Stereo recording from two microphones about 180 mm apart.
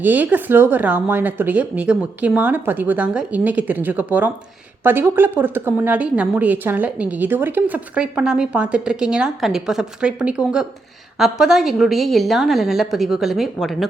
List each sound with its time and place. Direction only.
0.0 s a woman's voice: 10° right (ahead or behind)